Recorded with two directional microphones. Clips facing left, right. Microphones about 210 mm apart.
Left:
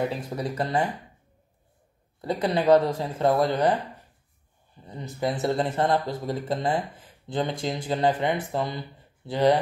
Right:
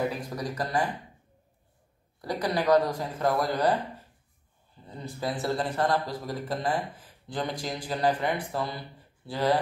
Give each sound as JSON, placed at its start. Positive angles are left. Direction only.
{"t": 0.1, "sound": "speech", "side_deg": 25}
{"t": 2.2, "sound": "speech", "side_deg": 25}
{"t": 4.8, "sound": "speech", "side_deg": 20}